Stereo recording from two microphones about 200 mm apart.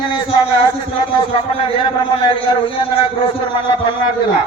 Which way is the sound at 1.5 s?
30° left (ahead or behind).